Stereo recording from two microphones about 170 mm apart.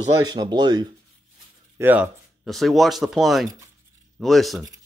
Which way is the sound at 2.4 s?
Centre (ahead or behind).